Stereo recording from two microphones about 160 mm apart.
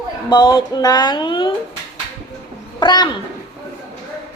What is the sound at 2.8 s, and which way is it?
Speech, 30° left (ahead or behind).